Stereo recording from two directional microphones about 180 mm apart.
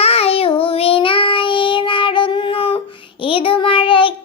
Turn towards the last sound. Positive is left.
turn(degrees=30)  # may be behind; listen again after turning